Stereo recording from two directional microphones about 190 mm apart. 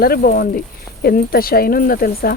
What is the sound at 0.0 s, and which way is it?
Speech, 55° left (ahead or behind).